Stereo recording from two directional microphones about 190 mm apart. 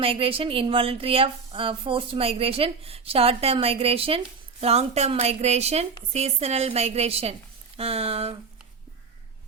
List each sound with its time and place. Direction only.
0.0 s a woman's voice: 30° right (ahead or behind)